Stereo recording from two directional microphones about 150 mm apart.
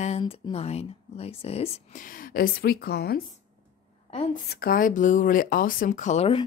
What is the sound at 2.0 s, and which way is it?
A woman's voice, 65° left (ahead or behind).